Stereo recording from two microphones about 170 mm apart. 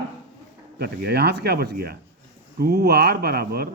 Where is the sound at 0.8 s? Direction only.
70° right (ahead or behind).